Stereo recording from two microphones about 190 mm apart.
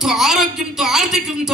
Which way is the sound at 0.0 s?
Centre (ahead or behind).